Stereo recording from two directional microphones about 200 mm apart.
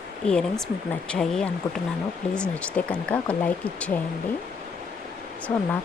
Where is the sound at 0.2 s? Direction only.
5° left (ahead or behind).